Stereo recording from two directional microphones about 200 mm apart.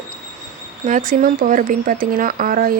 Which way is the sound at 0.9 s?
40° right (ahead or behind).